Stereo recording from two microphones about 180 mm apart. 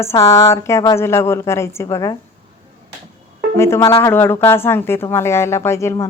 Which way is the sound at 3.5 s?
15° left (ahead or behind).